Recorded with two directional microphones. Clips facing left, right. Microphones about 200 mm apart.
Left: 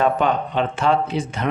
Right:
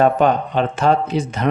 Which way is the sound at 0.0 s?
40° right (ahead or behind).